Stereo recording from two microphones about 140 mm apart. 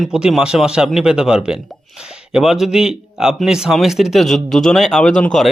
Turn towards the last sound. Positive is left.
turn(degrees=5)  # may be behind; listen again after turning